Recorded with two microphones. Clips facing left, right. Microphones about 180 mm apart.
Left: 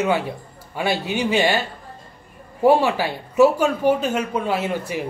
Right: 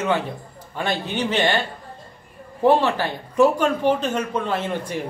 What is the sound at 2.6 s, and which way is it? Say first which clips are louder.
A man's voice: left 1 dB; 10° left (ahead or behind).